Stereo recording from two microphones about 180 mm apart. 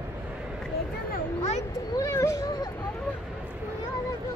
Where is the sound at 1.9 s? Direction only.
15° left (ahead or behind).